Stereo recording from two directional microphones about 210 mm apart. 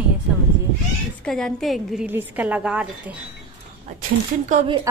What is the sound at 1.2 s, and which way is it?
Speech, centre (ahead or behind).